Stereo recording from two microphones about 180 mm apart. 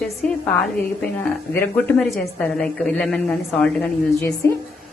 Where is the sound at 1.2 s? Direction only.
10° left (ahead or behind).